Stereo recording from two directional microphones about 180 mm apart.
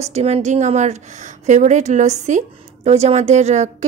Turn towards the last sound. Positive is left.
turn(degrees=-40)  # may be behind; listen again after turning